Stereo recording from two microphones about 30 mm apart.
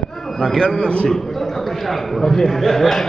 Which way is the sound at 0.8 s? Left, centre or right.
Left.